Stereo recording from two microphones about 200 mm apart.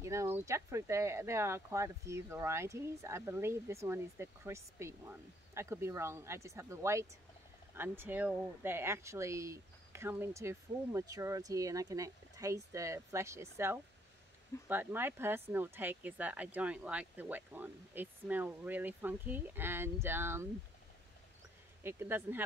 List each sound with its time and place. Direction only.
0.0 s speech: 15° right (ahead or behind)
21.8 s speech: 10° right (ahead or behind)